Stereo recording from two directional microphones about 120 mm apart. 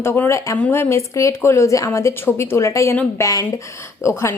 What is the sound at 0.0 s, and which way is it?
A woman's voice, 20° left (ahead or behind).